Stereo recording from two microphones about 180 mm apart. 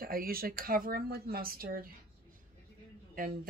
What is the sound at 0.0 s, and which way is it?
Speech, 55° right (ahead or behind).